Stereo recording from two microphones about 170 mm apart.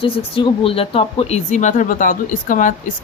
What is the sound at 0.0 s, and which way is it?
A woman's voice, 30° left (ahead or behind).